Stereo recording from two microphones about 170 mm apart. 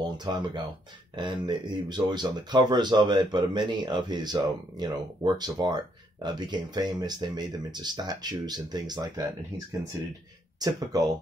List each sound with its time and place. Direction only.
0.2 s speech: 25° right (ahead or behind)